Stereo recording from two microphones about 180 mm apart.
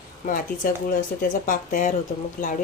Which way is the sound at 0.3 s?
45° left (ahead or behind).